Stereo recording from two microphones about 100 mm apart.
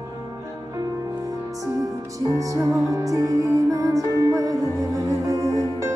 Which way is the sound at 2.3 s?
35° right (ahead or behind).